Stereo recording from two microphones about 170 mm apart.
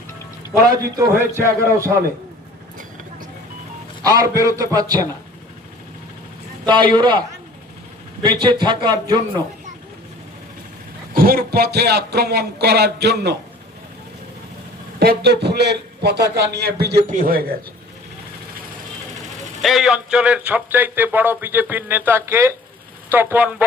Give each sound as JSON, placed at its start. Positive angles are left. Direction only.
{"t": 0.9, "sound": "a man's voice", "side_deg": -15}
{"t": 4.0, "sound": "a man's voice", "side_deg": -20}
{"t": 6.7, "sound": "a man's voice", "side_deg": -25}
{"t": 11.1, "sound": "a man's voice", "side_deg": -60}
{"t": 14.9, "sound": "a man's voice", "side_deg": -70}
{"t": 17.1, "sound": "speech", "side_deg": -55}
{"t": 19.6, "sound": "a man's voice", "side_deg": 0}